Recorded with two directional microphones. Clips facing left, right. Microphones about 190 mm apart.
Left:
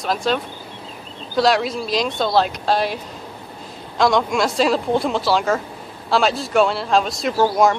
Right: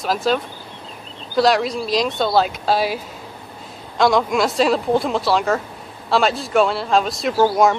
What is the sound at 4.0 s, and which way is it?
Speech, centre (ahead or behind).